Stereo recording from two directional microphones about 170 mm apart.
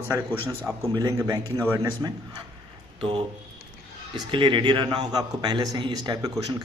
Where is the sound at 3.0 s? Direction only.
30° right (ahead or behind).